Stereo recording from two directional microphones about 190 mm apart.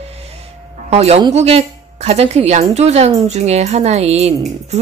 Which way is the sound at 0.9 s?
35° right (ahead or behind).